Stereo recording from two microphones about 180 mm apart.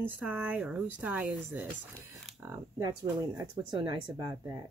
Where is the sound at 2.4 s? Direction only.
20° right (ahead or behind).